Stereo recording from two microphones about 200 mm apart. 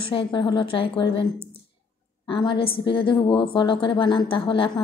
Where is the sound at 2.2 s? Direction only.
25° left (ahead or behind).